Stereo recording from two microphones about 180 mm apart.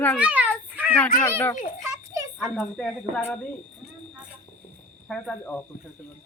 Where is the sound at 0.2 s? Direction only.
5° right (ahead or behind).